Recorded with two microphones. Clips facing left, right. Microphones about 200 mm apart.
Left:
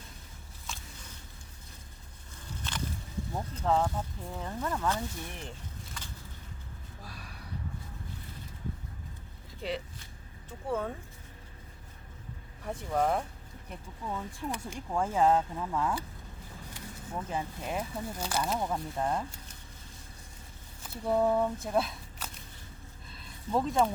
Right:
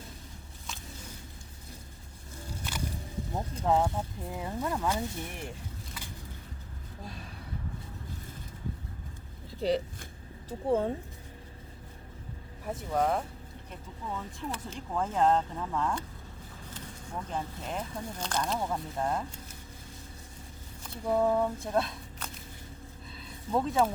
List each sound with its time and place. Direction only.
2.5 s walk: 10° right (ahead or behind)
3.3 s speech: 15° right (ahead or behind)
7.0 s a sound: 25° right (ahead or behind)
9.6 s speech: 40° right (ahead or behind)
12.6 s speech: centre (ahead or behind)
14.5 s speech: 10° left (ahead or behind)
20.8 s speech: 5° left (ahead or behind)
23.0 s a sound: centre (ahead or behind)